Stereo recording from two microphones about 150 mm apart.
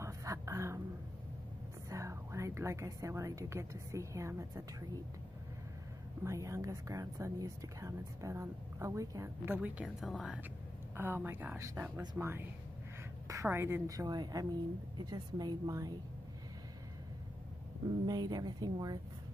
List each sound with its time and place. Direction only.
0.0 s a sound: 20° right (ahead or behind)
1.9 s a woman's voice: 20° right (ahead or behind)
6.2 s speech: 20° right (ahead or behind)
9.8 s speech: centre (ahead or behind)
11.0 s speech: 15° right (ahead or behind)
18.0 s speech: 25° right (ahead or behind)